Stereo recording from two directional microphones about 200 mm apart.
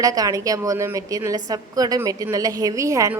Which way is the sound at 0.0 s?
15° right (ahead or behind).